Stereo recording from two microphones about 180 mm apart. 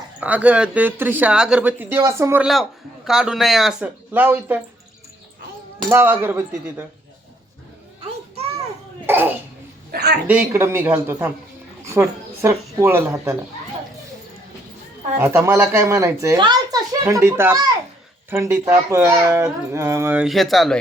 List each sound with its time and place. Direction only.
0.2 s speech: 10° right (ahead or behind)
2.5 s a man's voice: centre (ahead or behind)
5.9 s speech: 10° right (ahead or behind)
9.0 s cough: 10° right (ahead or behind)
9.9 s a man's voice: 60° right (ahead or behind)
10.2 s speech: 10° right (ahead or behind)
15.2 s speech: 15° right (ahead or behind); by 20.7 s centre (ahead or behind)